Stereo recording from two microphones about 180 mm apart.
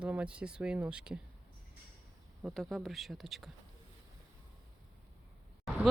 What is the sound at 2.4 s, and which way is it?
Speech, centre (ahead or behind).